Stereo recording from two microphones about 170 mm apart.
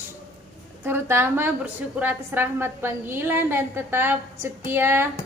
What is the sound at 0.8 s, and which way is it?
A woman's voice, 15° right (ahead or behind).